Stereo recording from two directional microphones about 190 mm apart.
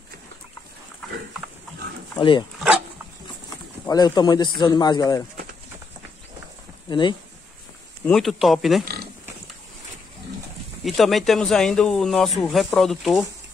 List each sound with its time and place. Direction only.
2.1 s speech: 25° left (ahead or behind)
3.8 s speech: 20° left (ahead or behind)
6.9 s speech: 25° left (ahead or behind)
8.0 s speech: centre (ahead or behind)
8.8 s a sound: 55° right (ahead or behind)
10.8 s speech: centre (ahead or behind)